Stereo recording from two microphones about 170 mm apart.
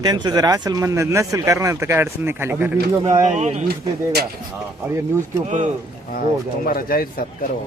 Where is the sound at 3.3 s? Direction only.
40° right (ahead or behind).